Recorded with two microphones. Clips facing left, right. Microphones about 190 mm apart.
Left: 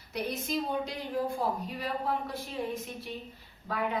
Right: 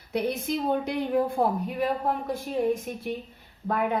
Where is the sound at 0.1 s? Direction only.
55° right (ahead or behind).